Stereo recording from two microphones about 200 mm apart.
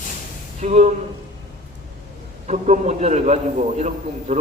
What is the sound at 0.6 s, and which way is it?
Speech, 35° right (ahead or behind).